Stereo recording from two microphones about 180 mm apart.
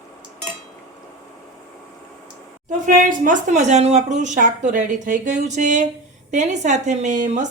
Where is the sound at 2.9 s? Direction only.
45° right (ahead or behind).